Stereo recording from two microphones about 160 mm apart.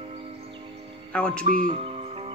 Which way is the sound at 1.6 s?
35° right (ahead or behind).